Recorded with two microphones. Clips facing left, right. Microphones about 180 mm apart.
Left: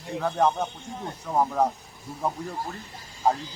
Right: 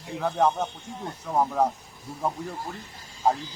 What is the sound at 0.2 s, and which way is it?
Speech, centre (ahead or behind).